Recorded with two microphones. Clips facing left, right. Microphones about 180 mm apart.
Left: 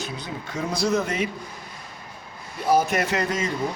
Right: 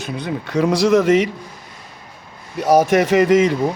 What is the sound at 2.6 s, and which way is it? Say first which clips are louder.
Speech: right 7 dB; 90° right.